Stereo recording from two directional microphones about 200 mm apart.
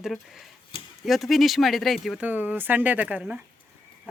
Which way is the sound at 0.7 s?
25° left (ahead or behind).